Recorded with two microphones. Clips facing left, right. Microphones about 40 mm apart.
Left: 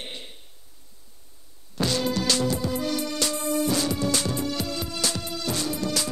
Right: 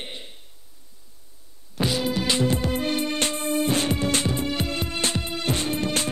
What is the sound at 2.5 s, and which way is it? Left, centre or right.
Music, right.